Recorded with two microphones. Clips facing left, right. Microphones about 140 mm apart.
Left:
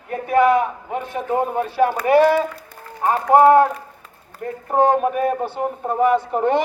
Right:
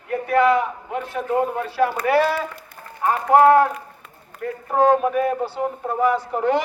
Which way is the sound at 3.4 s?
20° left (ahead or behind).